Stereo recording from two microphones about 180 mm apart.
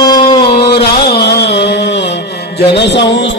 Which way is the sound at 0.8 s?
65° left (ahead or behind).